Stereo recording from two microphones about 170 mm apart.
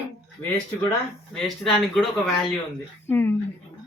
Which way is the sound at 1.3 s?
Centre (ahead or behind).